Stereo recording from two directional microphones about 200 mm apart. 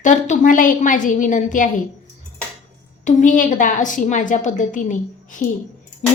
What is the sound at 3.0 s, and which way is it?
A woman's voice, 40° left (ahead or behind).